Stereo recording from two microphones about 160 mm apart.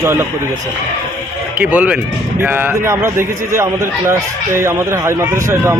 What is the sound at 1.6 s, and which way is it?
A man's voice, 10° right (ahead or behind).